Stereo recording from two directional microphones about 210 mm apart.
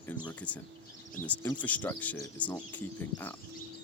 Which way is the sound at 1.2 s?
10° left (ahead or behind).